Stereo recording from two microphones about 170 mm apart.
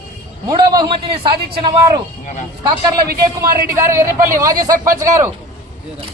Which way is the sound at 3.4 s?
15° right (ahead or behind).